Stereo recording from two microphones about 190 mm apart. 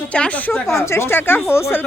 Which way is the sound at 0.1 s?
5° left (ahead or behind).